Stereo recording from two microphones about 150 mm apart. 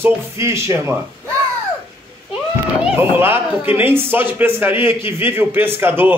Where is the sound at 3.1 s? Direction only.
15° right (ahead or behind).